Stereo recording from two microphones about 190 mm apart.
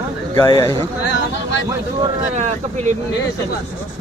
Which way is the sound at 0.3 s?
15° left (ahead or behind).